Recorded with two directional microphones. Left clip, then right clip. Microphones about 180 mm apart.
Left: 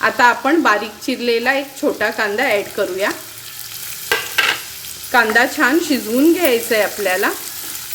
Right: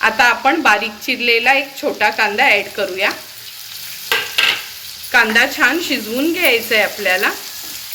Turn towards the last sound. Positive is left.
turn(degrees=35)  # may be behind; listen again after turning